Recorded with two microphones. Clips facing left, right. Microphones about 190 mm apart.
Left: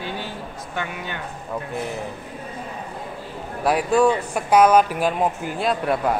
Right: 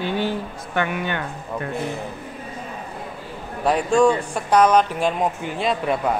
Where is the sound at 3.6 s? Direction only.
5° left (ahead or behind).